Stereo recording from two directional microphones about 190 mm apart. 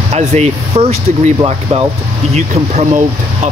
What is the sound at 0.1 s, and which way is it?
Speech, 35° right (ahead or behind).